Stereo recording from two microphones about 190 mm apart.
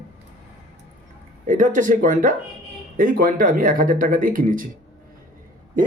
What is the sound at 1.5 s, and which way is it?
A man's voice, 40° right (ahead or behind).